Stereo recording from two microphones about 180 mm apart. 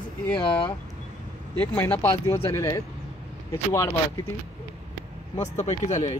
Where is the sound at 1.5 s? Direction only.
10° left (ahead or behind).